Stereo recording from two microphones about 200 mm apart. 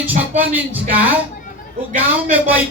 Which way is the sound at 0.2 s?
10° right (ahead or behind).